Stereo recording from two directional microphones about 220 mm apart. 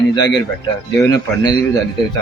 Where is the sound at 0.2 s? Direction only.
15° left (ahead or behind).